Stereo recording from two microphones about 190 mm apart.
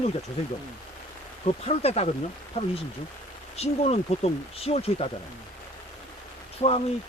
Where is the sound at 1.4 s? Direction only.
35° left (ahead or behind).